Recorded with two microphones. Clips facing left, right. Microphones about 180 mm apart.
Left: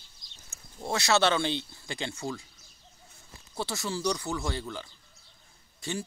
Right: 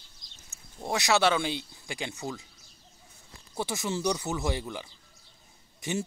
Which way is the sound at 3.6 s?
15° right (ahead or behind).